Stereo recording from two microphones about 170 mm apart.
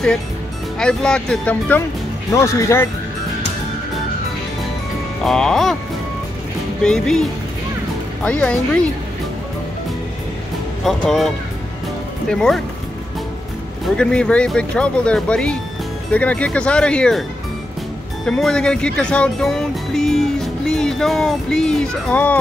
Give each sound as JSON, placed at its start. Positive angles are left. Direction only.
{"t": 0.7, "sound": "speech", "side_deg": 5}
{"t": 5.2, "sound": "speech", "side_deg": 0}
{"t": 6.8, "sound": "speech", "side_deg": 5}
{"t": 10.8, "sound": "speech", "side_deg": 0}
{"t": 13.9, "sound": "speech", "side_deg": 5}
{"t": 18.2, "sound": "speech", "side_deg": 5}